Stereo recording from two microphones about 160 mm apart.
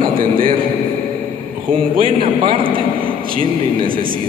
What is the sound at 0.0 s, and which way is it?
Speech, 60° right (ahead or behind).